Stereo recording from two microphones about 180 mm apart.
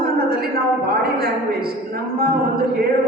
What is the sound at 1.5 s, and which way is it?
A woman's voice, 55° right (ahead or behind).